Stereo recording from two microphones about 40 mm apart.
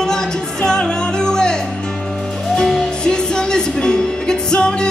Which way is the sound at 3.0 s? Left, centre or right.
Left.